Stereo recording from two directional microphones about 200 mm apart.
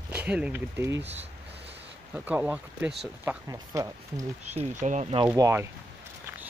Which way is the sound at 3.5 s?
15° right (ahead or behind).